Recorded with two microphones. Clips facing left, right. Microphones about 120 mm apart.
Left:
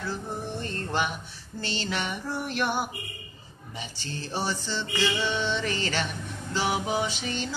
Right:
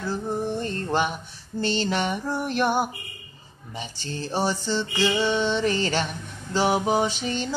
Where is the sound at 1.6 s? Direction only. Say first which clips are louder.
Right 7 dB; 45° right (ahead or behind).